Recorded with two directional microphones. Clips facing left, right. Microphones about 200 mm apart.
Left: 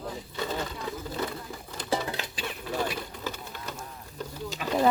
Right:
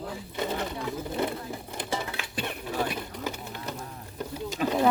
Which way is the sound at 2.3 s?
55° right (ahead or behind).